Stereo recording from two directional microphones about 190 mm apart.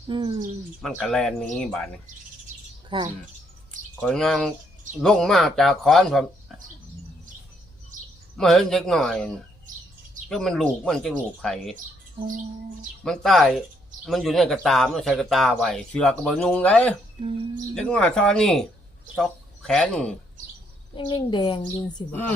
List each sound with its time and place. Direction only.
0.1 s speech: 25° right (ahead or behind)
0.8 s speech: centre (ahead or behind)
2.9 s speech: 25° right (ahead or behind)
4.0 s speech: centre (ahead or behind)
8.4 s speech: centre (ahead or behind)
13.1 s speech: centre (ahead or behind)
20.9 s a woman's voice: 25° left (ahead or behind)
22.1 s speech: 10° left (ahead or behind)